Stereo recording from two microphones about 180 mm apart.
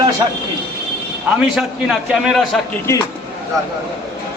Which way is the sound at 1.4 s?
Centre (ahead or behind).